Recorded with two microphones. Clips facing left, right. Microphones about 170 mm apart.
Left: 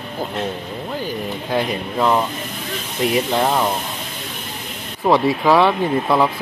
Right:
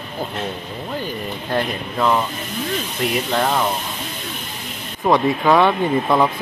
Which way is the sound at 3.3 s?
10° left (ahead or behind).